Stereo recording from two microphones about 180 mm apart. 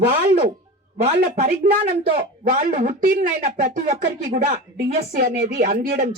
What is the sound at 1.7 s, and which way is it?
Speech, 60° right (ahead or behind).